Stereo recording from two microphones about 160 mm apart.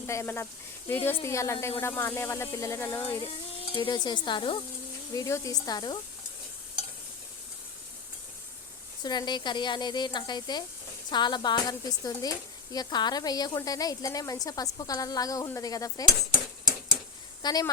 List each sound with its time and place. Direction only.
0.1 s speech: 15° left (ahead or behind)
3.8 s speech: 30° left (ahead or behind)
5.1 s speech: 20° left (ahead or behind)
9.0 s speech: 25° left (ahead or behind)
17.4 s a woman's voice: 25° left (ahead or behind)